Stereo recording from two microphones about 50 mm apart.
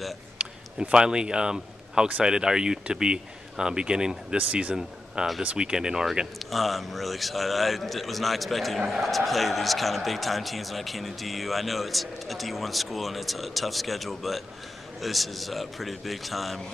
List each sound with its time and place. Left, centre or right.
0.4 s speech: centre
4.4 s speech: right
4.7 s speech: centre
6.5 s a man's voice: centre